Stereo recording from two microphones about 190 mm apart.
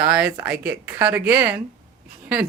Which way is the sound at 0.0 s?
10° right (ahead or behind).